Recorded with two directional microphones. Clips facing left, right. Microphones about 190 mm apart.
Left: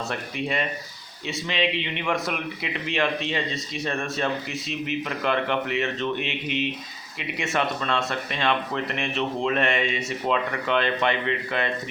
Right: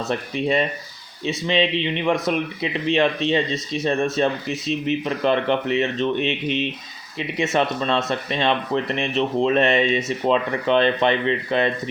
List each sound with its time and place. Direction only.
0.1 s speech: 25° right (ahead or behind)